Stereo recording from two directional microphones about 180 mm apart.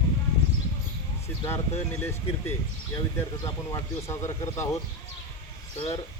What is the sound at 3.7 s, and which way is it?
Speech, 15° left (ahead or behind).